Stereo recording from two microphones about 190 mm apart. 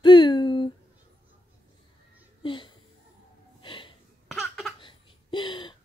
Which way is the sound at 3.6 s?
25° left (ahead or behind).